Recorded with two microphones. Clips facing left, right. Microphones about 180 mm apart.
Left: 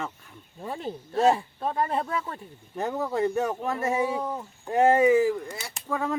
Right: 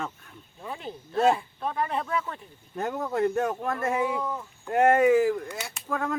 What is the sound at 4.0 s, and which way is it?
Speech, 30° left (ahead or behind).